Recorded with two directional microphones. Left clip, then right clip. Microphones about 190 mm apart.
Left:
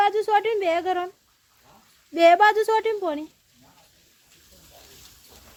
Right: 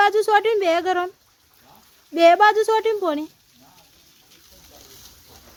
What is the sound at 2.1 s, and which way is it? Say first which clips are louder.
Speech: right 2 dB; 10° right (ahead or behind).